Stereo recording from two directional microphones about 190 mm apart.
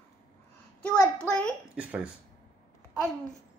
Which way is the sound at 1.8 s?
5° right (ahead or behind).